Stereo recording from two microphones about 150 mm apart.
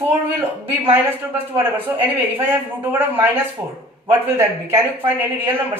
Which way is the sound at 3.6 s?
15° right (ahead or behind).